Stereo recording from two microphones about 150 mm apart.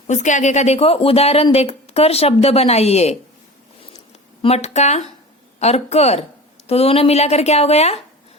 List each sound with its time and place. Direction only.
0.1 s speech: 55° left (ahead or behind)
4.4 s speech: 45° left (ahead or behind)